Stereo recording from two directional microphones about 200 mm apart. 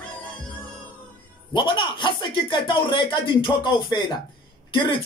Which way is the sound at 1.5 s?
25° left (ahead or behind).